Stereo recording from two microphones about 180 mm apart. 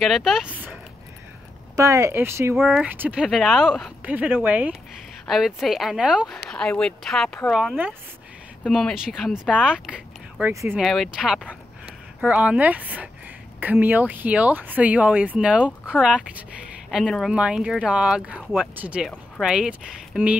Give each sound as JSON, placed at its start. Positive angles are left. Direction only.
{"t": 0.0, "sound": "speech", "side_deg": 0}
{"t": 1.8, "sound": "speech", "side_deg": -15}
{"t": 2.5, "sound": "speech", "side_deg": 0}
{"t": 10.5, "sound": "speech", "side_deg": -15}
{"t": 10.8, "sound": "speech", "side_deg": 0}